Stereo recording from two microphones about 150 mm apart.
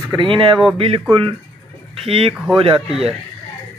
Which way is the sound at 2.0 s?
40° right (ahead or behind).